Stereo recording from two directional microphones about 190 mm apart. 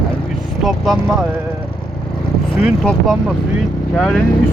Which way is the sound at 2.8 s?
Centre (ahead or behind).